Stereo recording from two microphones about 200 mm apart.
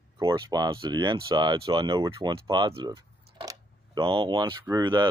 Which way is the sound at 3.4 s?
20° right (ahead or behind).